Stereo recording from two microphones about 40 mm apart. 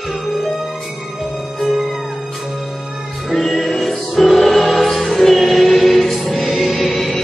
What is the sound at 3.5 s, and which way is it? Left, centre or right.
Music, centre.